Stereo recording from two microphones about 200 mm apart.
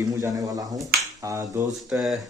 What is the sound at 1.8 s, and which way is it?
Speech, centre (ahead or behind).